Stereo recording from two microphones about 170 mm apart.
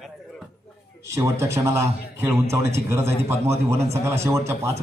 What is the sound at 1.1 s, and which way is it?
A man's voice, 15° right (ahead or behind).